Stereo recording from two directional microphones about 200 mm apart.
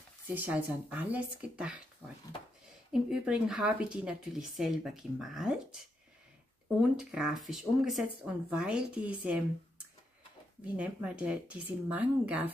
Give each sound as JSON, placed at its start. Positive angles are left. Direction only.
{"t": 0.3, "sound": "speech", "side_deg": -10}
{"t": 2.9, "sound": "speech", "side_deg": -5}
{"t": 7.0, "sound": "speech", "side_deg": 0}
{"t": 10.6, "sound": "speech", "side_deg": -5}